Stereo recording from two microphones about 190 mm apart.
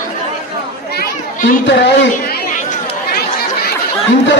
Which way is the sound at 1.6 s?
70° left (ahead or behind).